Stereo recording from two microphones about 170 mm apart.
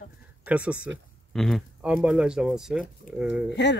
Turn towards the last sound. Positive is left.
turn(degrees=-5)  # may be behind; listen again after turning